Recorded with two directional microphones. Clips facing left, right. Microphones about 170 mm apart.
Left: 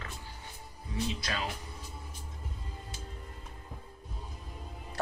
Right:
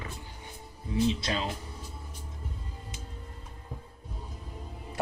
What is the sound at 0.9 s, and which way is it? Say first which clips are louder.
Speech: right 7 dB; 25° right (ahead or behind).